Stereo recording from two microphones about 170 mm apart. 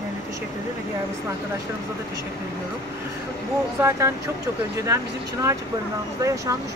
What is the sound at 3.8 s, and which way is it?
Speech, 15° right (ahead or behind).